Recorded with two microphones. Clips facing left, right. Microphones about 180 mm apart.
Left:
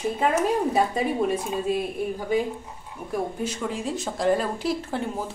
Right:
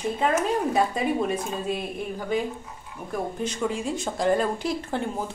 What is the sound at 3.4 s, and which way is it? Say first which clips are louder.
Speech: right 1 dB; centre (ahead or behind).